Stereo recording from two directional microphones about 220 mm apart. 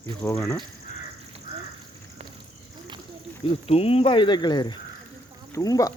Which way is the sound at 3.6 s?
25° left (ahead or behind).